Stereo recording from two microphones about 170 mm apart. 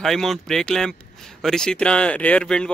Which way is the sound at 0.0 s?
Centre (ahead or behind).